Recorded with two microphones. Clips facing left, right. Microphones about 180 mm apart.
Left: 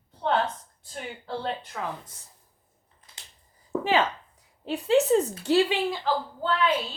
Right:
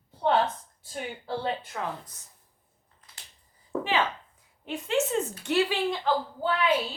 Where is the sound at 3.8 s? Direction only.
40° left (ahead or behind).